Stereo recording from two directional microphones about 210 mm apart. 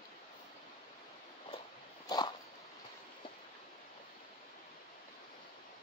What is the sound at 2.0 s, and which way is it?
Dog, 20° left (ahead or behind).